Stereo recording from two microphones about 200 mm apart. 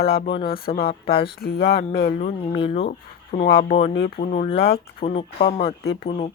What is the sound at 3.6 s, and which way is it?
Speech, 30° left (ahead or behind).